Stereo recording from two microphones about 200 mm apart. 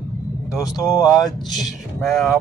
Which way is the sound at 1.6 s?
Centre (ahead or behind).